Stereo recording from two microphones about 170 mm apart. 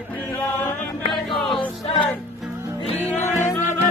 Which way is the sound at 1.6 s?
30° left (ahead or behind).